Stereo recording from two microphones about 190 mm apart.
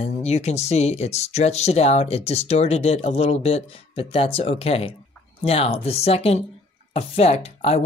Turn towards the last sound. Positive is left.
turn(degrees=35)  # may be behind; listen again after turning